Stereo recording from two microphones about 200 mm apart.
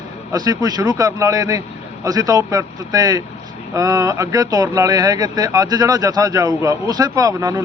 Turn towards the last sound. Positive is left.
turn(degrees=-15)  # may be behind; listen again after turning